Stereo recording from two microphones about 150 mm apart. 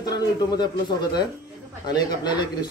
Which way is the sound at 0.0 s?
25° left (ahead or behind).